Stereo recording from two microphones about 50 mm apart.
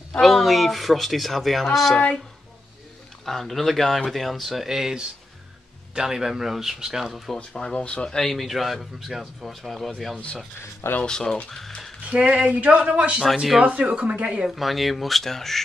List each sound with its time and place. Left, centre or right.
0.2 s speech: centre
3.3 s speech: centre
7.3 s speech: centre
8.3 s speech: centre
12.0 s a sound: right
13.2 s speech: centre
14.0 s a sound: right
14.5 s speech: centre